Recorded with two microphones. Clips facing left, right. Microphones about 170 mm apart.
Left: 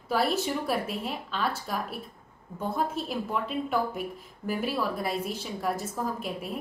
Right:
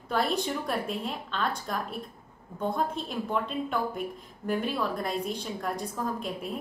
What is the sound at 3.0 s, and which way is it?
A woman's voice, 5° left (ahead or behind).